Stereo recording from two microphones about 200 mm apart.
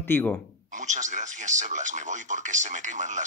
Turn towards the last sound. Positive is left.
turn(degrees=-35)  # may be behind; listen again after turning